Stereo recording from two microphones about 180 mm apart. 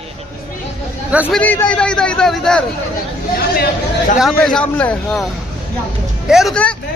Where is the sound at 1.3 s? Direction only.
10° left (ahead or behind).